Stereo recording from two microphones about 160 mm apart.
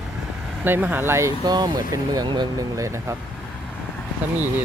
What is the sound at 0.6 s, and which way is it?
Speech, 10° right (ahead or behind).